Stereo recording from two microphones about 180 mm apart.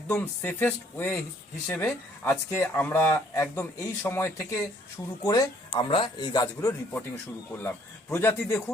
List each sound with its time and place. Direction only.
0.1 s speech: 10° left (ahead or behind)
8.1 s speech: 15° left (ahead or behind)